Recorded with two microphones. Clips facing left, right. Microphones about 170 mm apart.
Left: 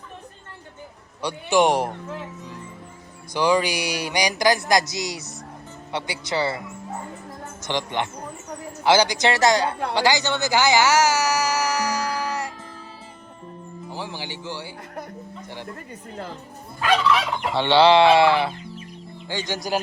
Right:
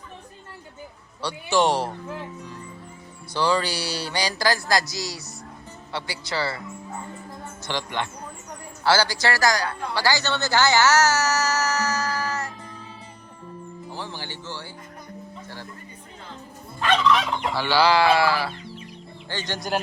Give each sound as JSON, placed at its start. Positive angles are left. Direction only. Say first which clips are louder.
{"t": 1.2, "sound": "speech", "louder": "left 3 dB", "side_deg": 15}
{"t": 3.3, "sound": "speech", "louder": "left 3 dB", "side_deg": 15}
{"t": 5.9, "sound": "a sound", "louder": "left 3 dB", "side_deg": 20}
{"t": 7.6, "sound": "a sound", "louder": "left 3 dB", "side_deg": 20}
{"t": 9.9, "sound": "speech", "louder": "left 2 dB", "side_deg": 20}
{"t": 13.9, "sound": "music", "louder": "left 3 dB", "side_deg": 15}
{"t": 16.8, "sound": "gobble", "louder": "even", "side_deg": 5}
{"t": 17.5, "sound": "a sound", "louder": "left 5 dB", "side_deg": 25}
{"t": 19.3, "sound": "speech", "louder": "left 3 dB", "side_deg": 10}
{"t": 19.5, "sound": "gobble", "louder": "left 1 dB", "side_deg": 0}